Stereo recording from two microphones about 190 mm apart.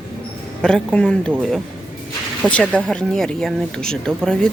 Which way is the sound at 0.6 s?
5° left (ahead or behind).